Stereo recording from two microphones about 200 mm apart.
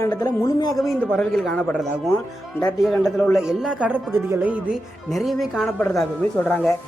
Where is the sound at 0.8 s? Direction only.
Centre (ahead or behind).